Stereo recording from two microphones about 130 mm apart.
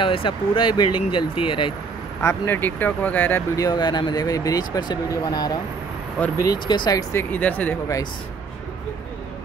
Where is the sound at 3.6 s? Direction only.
30° left (ahead or behind).